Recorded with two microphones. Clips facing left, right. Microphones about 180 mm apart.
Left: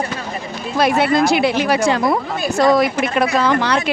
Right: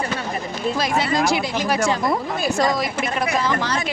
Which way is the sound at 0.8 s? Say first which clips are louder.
Left 8 dB; 60° left (ahead or behind).